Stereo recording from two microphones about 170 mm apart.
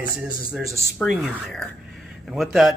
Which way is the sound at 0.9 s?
5° left (ahead or behind).